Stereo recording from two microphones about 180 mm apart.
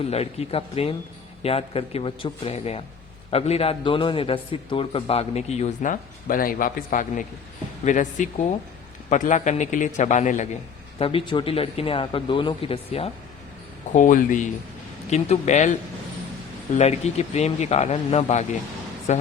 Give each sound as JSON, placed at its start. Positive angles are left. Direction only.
{"t": 0.0, "sound": "a man's voice", "side_deg": 35}
{"t": 13.9, "sound": "a man's voice", "side_deg": 45}
{"t": 16.7, "sound": "a man's voice", "side_deg": 35}